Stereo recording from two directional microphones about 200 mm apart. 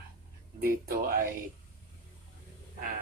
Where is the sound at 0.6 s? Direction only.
45° right (ahead or behind).